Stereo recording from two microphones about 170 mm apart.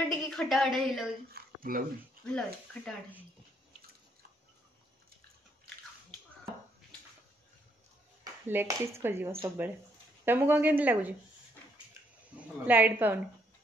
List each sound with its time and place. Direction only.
0.0 s a woman's voice: 5° left (ahead or behind)
1.3 s speech: 55° right (ahead or behind)
2.2 s speech: 5° left (ahead or behind)
8.2 s speech: 15° right (ahead or behind)
12.4 s speech: 10° right (ahead or behind)